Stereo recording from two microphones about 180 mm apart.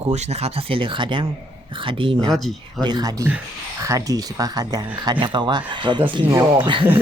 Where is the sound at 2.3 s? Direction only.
Centre (ahead or behind).